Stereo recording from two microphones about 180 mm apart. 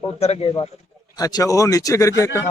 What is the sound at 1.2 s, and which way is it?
Speech, 20° left (ahead or behind).